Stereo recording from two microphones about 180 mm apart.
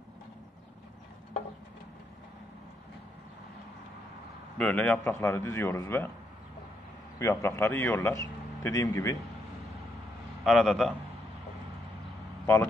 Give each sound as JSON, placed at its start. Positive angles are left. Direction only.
{"t": 4.6, "sound": "a man's voice", "side_deg": 10}
{"t": 7.2, "sound": "a man's voice", "side_deg": 15}
{"t": 10.4, "sound": "a man's voice", "side_deg": 0}